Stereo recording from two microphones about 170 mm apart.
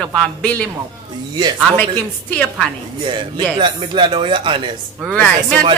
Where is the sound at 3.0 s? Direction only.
30° right (ahead or behind).